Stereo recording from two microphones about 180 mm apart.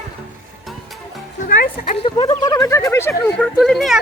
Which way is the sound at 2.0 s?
30° left (ahead or behind).